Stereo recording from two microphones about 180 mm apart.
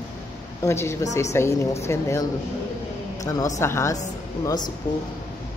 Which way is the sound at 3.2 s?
20° left (ahead or behind).